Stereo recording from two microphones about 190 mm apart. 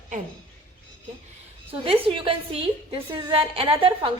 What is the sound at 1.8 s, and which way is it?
A woman's voice, 30° right (ahead or behind).